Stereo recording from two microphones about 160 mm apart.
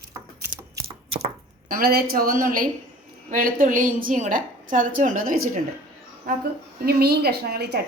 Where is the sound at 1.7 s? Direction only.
70° right (ahead or behind).